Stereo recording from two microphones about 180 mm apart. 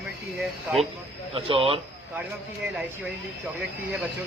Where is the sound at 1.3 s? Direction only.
30° right (ahead or behind).